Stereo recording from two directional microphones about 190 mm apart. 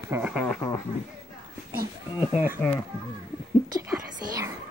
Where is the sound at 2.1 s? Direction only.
10° right (ahead or behind).